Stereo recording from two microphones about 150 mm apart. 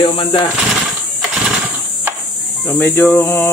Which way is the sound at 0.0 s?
35° left (ahead or behind).